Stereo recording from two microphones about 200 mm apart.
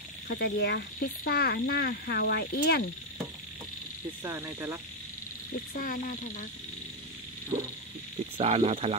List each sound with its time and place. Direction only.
0.3 s speech: 55° left (ahead or behind)
4.2 s cricket: 15° right (ahead or behind)
5.8 s speech: 45° left (ahead or behind)
7.5 s a sound: 25° right (ahead or behind)
8.4 s speech: 35° right (ahead or behind)